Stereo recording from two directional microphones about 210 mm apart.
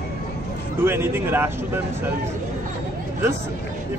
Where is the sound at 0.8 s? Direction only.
10° right (ahead or behind).